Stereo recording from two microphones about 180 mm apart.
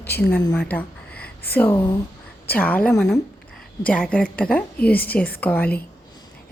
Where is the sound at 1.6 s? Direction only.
15° left (ahead or behind).